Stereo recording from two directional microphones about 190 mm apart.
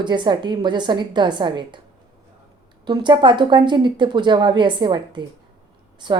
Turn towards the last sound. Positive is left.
turn(degrees=-25)  # may be behind; listen again after turning